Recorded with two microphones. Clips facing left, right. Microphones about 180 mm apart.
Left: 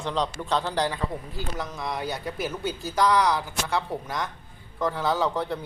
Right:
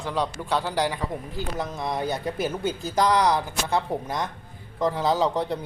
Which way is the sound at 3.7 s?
20° right (ahead or behind).